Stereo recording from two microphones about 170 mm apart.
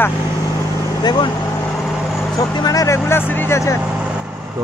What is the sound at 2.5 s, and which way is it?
Speech, 20° left (ahead or behind).